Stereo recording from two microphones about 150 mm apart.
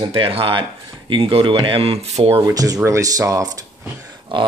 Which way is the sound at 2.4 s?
25° right (ahead or behind).